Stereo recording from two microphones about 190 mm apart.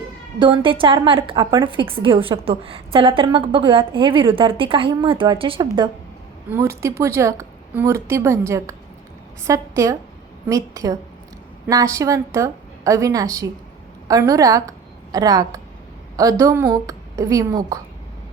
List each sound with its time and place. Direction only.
0.3 s a woman's voice: 25° right (ahead or behind)